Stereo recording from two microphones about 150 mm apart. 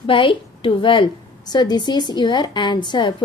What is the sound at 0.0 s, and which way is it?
A woman's voice, 35° left (ahead or behind).